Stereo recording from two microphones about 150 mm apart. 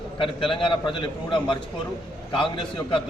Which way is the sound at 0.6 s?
35° left (ahead or behind).